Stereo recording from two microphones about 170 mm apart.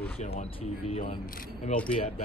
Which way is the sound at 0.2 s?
40° left (ahead or behind).